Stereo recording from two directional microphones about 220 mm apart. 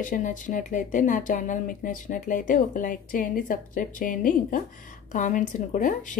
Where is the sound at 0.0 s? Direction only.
35° left (ahead or behind).